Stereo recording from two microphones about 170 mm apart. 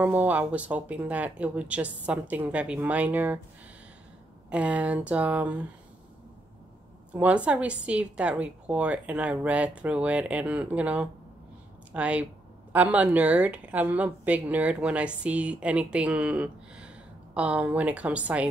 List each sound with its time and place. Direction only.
0.0 s a woman's voice: 10° right (ahead or behind)
4.5 s a woman's voice: 10° right (ahead or behind)
7.1 s a woman's voice: 5° right (ahead or behind)